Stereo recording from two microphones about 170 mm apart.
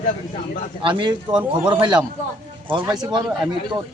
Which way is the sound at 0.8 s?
30° right (ahead or behind).